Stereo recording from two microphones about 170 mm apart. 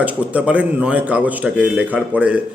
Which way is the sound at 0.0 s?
10° right (ahead or behind).